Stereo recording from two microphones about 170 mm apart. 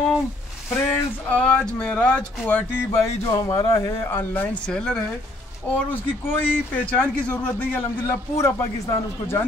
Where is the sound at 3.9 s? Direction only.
15° left (ahead or behind).